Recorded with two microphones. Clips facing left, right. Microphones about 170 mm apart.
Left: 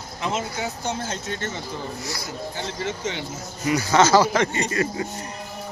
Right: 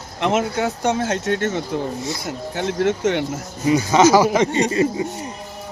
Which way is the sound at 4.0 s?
15° right (ahead or behind).